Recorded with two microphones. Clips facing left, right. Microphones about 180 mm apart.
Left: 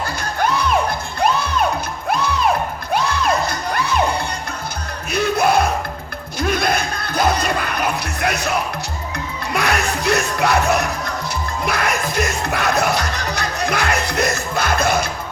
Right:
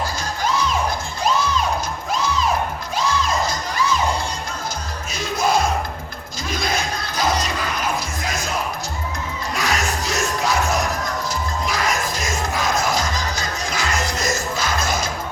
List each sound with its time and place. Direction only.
0.0 s music: 60° left (ahead or behind)
2.9 s crowd: 60° left (ahead or behind)
5.1 s music: 60° left (ahead or behind)
6.4 s a sound: 60° left (ahead or behind)
9.5 s music: 60° left (ahead or behind)